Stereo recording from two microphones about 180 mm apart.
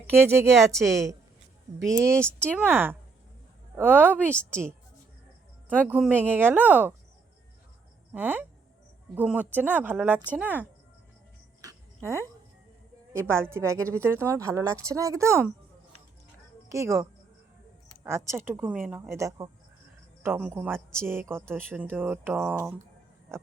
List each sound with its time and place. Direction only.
0.1 s a woman's voice: 15° right (ahead or behind)
0.9 s a woman's voice: centre (ahead or behind)
2.6 s a woman's voice: 10° right (ahead or behind)
5.6 s speech: 10° left (ahead or behind)
5.9 s a woman's voice: 10° right (ahead or behind)
8.1 s a woman's voice: 10° right (ahead or behind)
11.6 s a sound: 15° right (ahead or behind)
13.1 s a woman's voice: 15° right (ahead or behind)
16.6 s a woman's voice: 15° right (ahead or behind)
23.3 s music: 15° right (ahead or behind)